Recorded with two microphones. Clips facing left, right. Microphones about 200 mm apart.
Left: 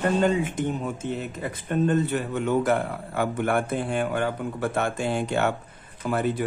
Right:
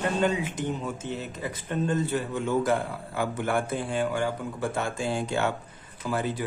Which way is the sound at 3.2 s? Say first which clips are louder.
Left 3 dB; 60° left (ahead or behind).